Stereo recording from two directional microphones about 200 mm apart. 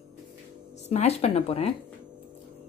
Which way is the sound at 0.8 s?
30° left (ahead or behind).